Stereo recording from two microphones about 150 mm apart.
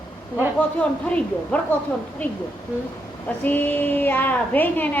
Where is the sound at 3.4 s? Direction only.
10° left (ahead or behind).